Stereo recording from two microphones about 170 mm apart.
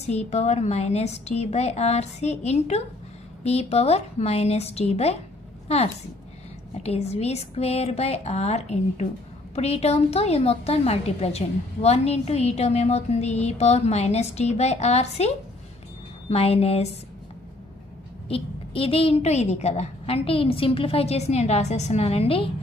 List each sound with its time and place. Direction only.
0.0 s a woman's voice: 40° left (ahead or behind)
6.8 s a woman's voice: 35° left (ahead or behind)
18.3 s a woman's voice: 35° left (ahead or behind)